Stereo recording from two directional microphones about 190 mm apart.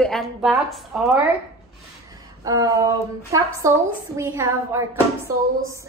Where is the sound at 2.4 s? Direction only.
20° right (ahead or behind).